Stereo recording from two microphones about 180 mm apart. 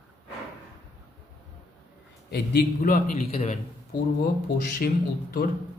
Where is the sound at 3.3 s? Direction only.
35° left (ahead or behind).